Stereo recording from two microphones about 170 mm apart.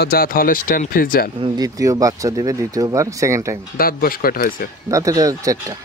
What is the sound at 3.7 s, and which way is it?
Speech, 60° left (ahead or behind).